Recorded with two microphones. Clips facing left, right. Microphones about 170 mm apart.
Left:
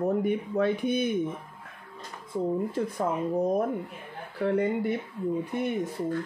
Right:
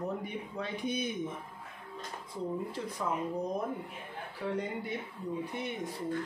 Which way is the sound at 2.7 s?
50° left (ahead or behind).